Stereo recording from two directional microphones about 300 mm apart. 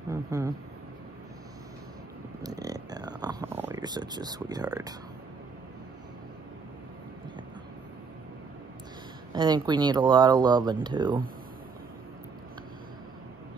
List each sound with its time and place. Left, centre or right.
0.1 s speech: centre
2.4 s a sound: centre
9.3 s speech: centre